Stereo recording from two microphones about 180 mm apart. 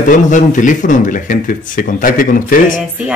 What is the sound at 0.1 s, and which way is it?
Speech, 45° left (ahead or behind).